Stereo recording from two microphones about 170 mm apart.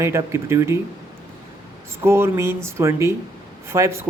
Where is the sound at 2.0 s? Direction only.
15° right (ahead or behind).